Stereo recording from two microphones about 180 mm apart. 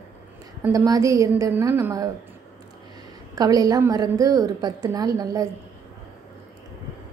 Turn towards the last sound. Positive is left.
turn(degrees=-20)  # may be behind; listen again after turning